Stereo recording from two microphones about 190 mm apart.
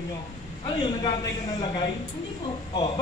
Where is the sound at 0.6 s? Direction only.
25° left (ahead or behind).